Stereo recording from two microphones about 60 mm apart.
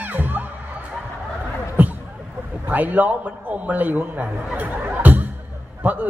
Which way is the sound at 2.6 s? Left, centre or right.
Right.